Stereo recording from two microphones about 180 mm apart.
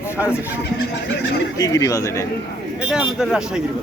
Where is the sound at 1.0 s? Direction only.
80° left.